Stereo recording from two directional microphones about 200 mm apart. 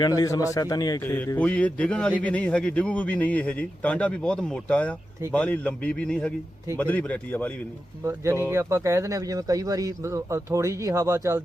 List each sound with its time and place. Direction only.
0.2 s a man's voice: 15° left (ahead or behind)
8.0 s speech: 15° right (ahead or behind)